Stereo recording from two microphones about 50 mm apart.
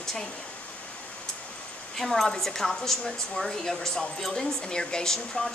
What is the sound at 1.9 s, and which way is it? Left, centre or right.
Speech, centre.